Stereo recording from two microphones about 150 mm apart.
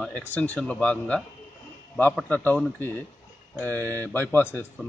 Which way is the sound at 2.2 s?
10° left (ahead or behind).